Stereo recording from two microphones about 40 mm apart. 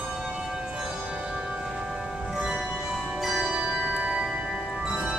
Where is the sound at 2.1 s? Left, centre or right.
Centre.